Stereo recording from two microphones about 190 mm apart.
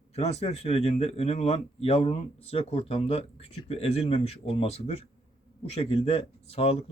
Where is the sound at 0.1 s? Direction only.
35° left (ahead or behind).